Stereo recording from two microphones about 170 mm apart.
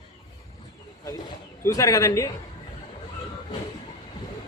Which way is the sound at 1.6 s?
20° left (ahead or behind).